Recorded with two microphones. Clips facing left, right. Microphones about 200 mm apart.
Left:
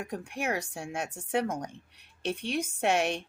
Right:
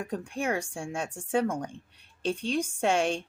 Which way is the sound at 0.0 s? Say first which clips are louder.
Right 2 dB; 30° right (ahead or behind).